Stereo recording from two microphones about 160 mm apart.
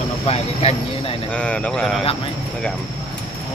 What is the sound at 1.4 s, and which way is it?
Speech, 5° left (ahead or behind).